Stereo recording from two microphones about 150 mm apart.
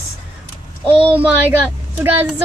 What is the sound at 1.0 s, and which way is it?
Speech, 35° right (ahead or behind).